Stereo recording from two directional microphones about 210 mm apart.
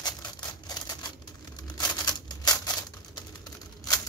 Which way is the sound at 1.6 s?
20° left (ahead or behind).